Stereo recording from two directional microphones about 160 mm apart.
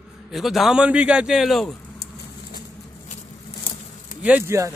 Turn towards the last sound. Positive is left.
turn(degrees=-20)  # may be behind; listen again after turning